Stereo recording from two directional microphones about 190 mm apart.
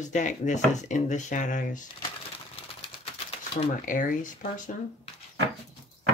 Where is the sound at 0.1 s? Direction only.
40° left (ahead or behind).